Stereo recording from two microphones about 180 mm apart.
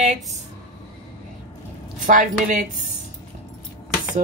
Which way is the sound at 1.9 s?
45° right (ahead or behind).